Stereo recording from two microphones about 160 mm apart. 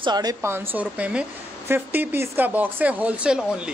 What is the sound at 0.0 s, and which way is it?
Speech, 25° right (ahead or behind).